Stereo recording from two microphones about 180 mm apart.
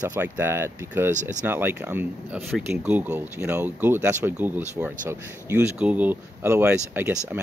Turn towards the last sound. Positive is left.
turn(degrees=-10)  # may be behind; listen again after turning